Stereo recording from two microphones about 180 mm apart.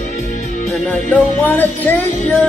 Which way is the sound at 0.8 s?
5° left (ahead or behind).